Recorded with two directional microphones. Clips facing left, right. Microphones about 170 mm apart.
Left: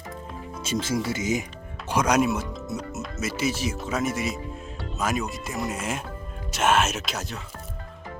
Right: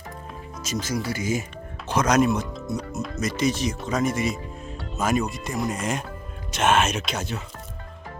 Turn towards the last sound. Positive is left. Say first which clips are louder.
# right 3 dB
turn(degrees=0)  # may be behind; listen again after turning